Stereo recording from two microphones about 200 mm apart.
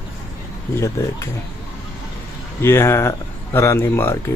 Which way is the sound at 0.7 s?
15° left (ahead or behind).